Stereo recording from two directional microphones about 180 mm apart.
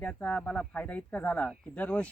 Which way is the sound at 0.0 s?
10° left (ahead or behind).